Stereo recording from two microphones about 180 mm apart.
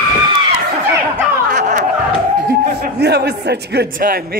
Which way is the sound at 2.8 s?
65° right (ahead or behind).